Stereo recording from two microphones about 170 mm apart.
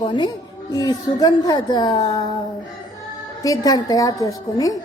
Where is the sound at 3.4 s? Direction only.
20° left (ahead or behind).